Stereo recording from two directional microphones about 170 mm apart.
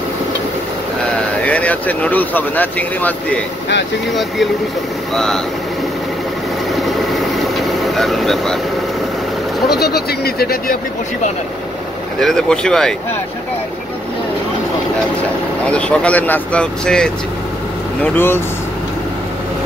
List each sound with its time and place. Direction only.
1.1 s speech: 10° left (ahead or behind)
6.7 s vehicle: centre (ahead or behind)
9.8 s speech: 70° left (ahead or behind)
12.2 s speech: centre (ahead or behind)
15.6 s speech: 5° left (ahead or behind)